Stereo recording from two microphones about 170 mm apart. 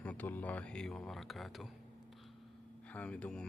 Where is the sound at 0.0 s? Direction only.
10° left (ahead or behind).